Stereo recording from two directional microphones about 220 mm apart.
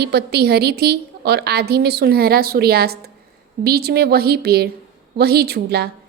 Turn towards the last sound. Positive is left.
turn(degrees=-45)  # may be behind; listen again after turning